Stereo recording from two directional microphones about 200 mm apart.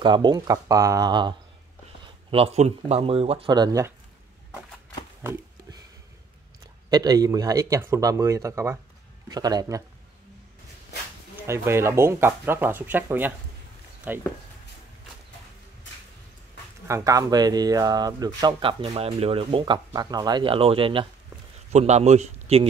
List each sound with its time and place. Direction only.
0.0 s speech: 20° right (ahead or behind)
5.2 s a sound: 10° right (ahead or behind)
6.9 s speech: 20° right (ahead or behind)
11.4 s speech: 15° right (ahead or behind)
16.8 s a man's voice: 15° right (ahead or behind); by 22.7 s 30° right (ahead or behind)